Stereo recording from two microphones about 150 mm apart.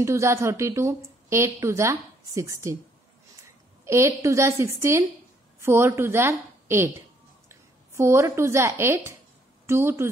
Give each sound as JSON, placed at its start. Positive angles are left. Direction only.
{"t": 0.0, "sound": "a woman's voice", "side_deg": -20}